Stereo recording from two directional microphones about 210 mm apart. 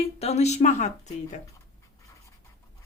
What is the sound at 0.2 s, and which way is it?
Speech, 30° left (ahead or behind).